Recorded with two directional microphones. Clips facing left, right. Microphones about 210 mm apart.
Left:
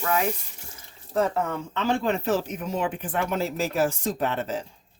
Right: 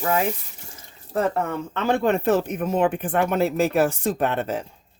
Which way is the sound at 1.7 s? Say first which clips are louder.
Right 4 dB; 55° right (ahead or behind).